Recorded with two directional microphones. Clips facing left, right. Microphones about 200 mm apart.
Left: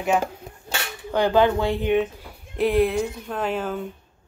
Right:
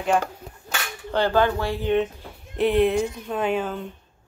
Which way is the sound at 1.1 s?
15° left (ahead or behind).